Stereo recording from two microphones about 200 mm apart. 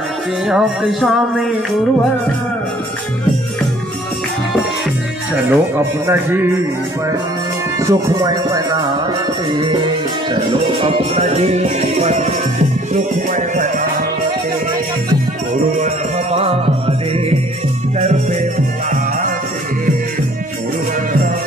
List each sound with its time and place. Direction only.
0.5 s speech: centre (ahead or behind)
5.5 s speech: 10° right (ahead or behind)
7.8 s speech: 15° right (ahead or behind)
10.8 s music: 35° right (ahead or behind)
15.8 s music: 30° right (ahead or behind)
17.9 s music: 35° right (ahead or behind)